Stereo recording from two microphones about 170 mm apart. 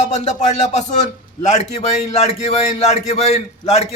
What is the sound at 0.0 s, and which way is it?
Speech, 45° left (ahead or behind).